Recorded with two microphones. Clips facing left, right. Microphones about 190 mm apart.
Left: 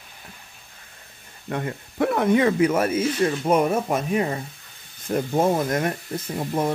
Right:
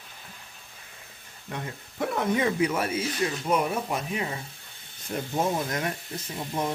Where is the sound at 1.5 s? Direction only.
60° left (ahead or behind).